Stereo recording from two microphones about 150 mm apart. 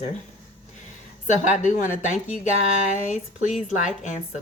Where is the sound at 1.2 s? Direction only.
55° left (ahead or behind).